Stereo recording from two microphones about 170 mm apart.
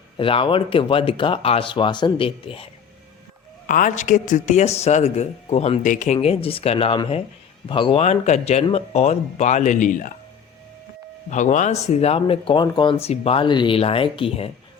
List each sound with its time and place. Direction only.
0.2 s speech: 30° left (ahead or behind)
3.7 s a man's voice: 50° left (ahead or behind)
6.1 s a man's voice: 35° left (ahead or behind)
11.3 s speech: 45° left (ahead or behind)